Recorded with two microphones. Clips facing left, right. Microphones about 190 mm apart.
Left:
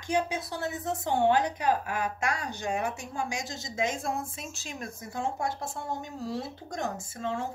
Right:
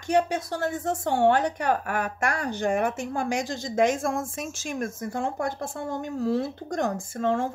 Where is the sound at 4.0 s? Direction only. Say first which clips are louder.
Right 5 dB; 90° right.